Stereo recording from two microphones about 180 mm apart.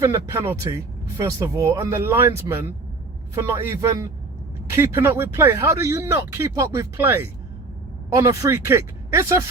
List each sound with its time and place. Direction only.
0.0 s speech: 15° right (ahead or behind)